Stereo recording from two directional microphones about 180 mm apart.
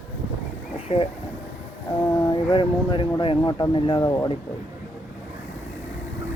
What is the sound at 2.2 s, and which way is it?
Speech, 25° left (ahead or behind).